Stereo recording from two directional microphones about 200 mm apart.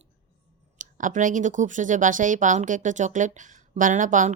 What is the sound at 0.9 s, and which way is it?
A woman's voice, 40° right (ahead or behind).